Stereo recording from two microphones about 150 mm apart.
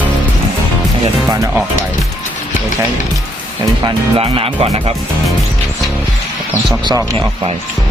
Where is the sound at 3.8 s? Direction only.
35° right (ahead or behind).